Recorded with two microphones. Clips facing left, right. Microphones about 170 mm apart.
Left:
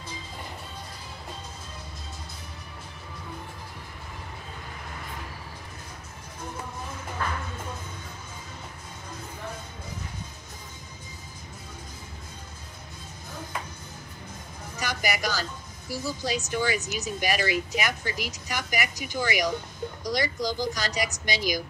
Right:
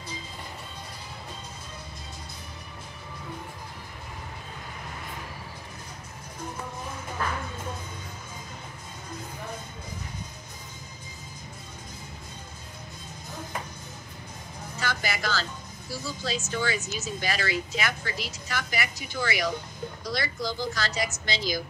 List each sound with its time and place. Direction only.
14.8 s vehicle: 15° left (ahead or behind)
15.9 s speech: 15° left (ahead or behind)